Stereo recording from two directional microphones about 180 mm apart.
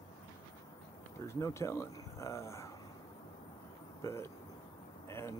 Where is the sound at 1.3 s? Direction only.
15° left (ahead or behind).